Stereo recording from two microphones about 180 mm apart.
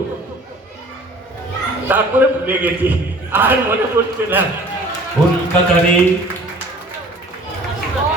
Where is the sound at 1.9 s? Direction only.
10° right (ahead or behind).